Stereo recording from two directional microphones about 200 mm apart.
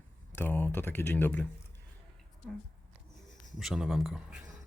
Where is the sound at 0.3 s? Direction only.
10° left (ahead or behind).